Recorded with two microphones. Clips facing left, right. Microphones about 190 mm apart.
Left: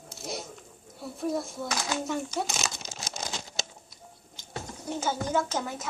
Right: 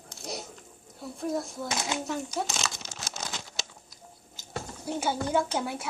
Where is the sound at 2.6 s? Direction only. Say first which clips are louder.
Even; 15° left (ahead or behind).